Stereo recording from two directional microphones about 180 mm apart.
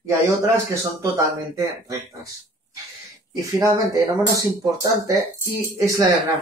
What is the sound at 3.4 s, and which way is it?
Speech, 20° right (ahead or behind).